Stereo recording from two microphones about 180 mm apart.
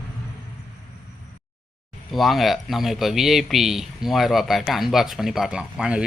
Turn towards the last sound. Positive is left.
turn(degrees=-5)  # may be behind; listen again after turning